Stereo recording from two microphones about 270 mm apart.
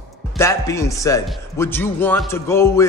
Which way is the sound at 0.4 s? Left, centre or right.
Centre.